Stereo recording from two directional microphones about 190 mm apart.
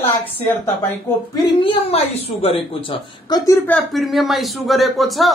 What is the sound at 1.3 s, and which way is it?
Speech, 30° left (ahead or behind).